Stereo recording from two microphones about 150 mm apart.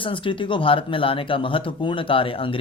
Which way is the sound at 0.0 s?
35° left (ahead or behind).